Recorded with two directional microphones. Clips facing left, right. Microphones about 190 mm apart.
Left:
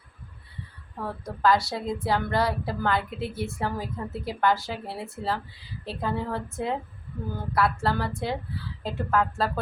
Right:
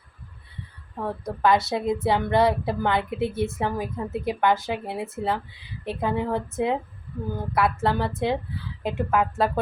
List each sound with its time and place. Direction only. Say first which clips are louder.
1.0 s a woman's voice: right 2 dB; 20° right (ahead or behind)